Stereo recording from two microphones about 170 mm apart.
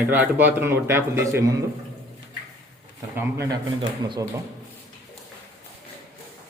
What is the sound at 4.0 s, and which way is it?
Speech, 25° right (ahead or behind).